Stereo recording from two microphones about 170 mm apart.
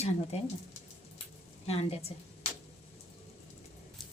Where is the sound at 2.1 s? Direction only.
35° left (ahead or behind).